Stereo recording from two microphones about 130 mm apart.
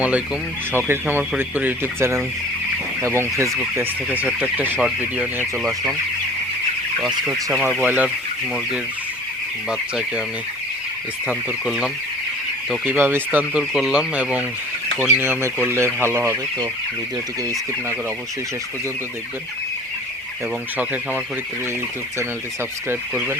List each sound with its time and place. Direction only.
0.7 s speech: 15° right (ahead or behind)
7.8 s speech: 10° right (ahead or behind)
9.6 s speech: 5° right (ahead or behind)
11.3 s speech: 5° right (ahead or behind); by 16.4 s 20° right (ahead or behind)
20.7 s speech: 15° right (ahead or behind)